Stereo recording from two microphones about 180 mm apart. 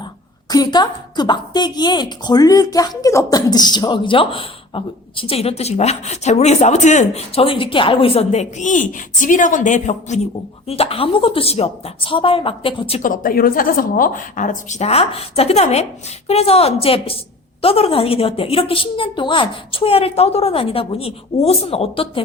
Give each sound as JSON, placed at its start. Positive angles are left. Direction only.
{"t": 0.5, "sound": "a woman's voice", "side_deg": 20}
{"t": 13.0, "sound": "a woman's voice", "side_deg": 50}